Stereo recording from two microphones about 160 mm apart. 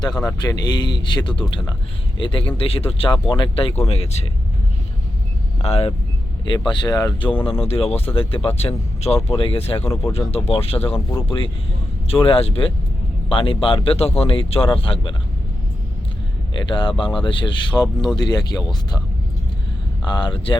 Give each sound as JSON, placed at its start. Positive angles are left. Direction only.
{"t": 0.0, "sound": "speech", "side_deg": 25}
{"t": 5.6, "sound": "speech", "side_deg": 40}
{"t": 6.7, "sound": "speech", "side_deg": 25}
{"t": 16.6, "sound": "speech", "side_deg": 30}
{"t": 20.1, "sound": "speech", "side_deg": 30}